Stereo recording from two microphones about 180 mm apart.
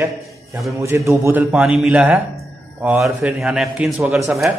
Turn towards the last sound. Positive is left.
turn(degrees=0)  # may be behind; listen again after turning